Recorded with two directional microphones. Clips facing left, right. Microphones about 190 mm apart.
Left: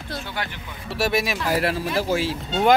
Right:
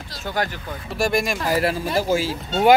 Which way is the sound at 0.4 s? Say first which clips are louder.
Right 8 dB; 40° right (ahead or behind).